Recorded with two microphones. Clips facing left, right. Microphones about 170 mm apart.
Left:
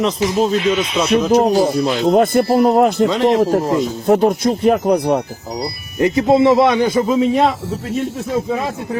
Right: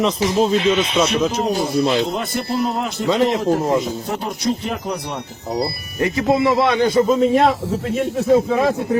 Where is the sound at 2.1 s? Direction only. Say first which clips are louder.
Left 10 dB; 50° left (ahead or behind).